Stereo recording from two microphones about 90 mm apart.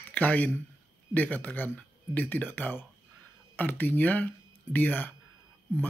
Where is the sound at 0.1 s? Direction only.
20° left (ahead or behind).